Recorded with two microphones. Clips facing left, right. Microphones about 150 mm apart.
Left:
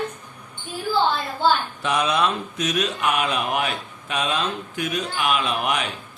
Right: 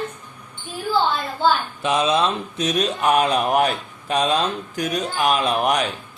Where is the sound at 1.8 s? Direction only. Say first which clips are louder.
Right 3 dB; 25° right (ahead or behind); by 5.8 s 40° right (ahead or behind).